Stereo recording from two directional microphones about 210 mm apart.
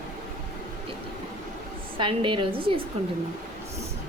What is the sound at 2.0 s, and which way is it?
Speech, 25° right (ahead or behind).